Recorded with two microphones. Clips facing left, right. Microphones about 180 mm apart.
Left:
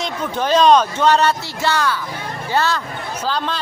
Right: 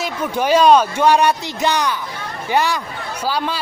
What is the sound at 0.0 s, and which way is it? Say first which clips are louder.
Speech: right 2 dB; 10° right (ahead or behind).